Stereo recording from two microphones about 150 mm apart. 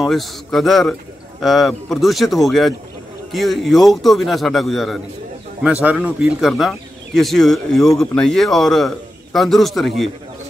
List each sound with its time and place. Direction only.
0.0 s speech: centre (ahead or behind)